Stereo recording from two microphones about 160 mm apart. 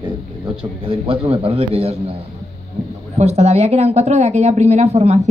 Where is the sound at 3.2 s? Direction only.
40° right (ahead or behind).